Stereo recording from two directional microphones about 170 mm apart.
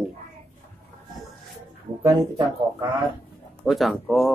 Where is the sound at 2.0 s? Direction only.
25° right (ahead or behind).